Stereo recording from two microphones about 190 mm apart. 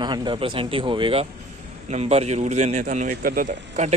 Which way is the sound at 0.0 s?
25° right (ahead or behind).